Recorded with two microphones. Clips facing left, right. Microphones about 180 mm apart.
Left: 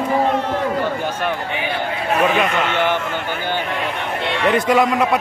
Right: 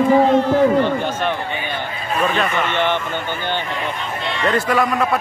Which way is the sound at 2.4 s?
70° left (ahead or behind).